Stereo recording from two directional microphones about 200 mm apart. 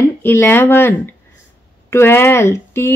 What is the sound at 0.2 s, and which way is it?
Speech, 10° left (ahead or behind).